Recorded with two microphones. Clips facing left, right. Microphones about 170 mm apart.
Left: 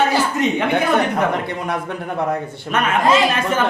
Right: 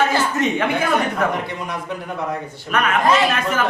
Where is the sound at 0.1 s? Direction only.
15° left (ahead or behind).